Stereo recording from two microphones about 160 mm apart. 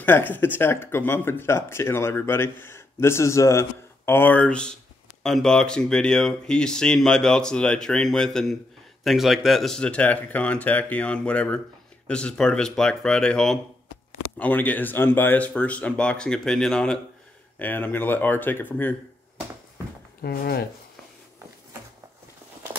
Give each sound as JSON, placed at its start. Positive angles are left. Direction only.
{"t": 0.0, "sound": "speech", "side_deg": 10}
{"t": 20.2, "sound": "speech", "side_deg": 70}